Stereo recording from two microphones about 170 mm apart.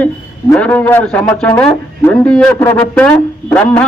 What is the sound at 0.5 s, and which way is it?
A man's voice, 5° left (ahead or behind).